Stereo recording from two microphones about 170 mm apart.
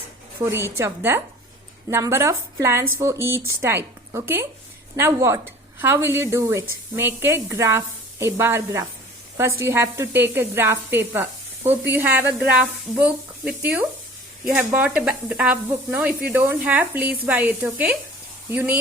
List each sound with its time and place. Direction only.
0.3 s sizzle: 20° right (ahead or behind)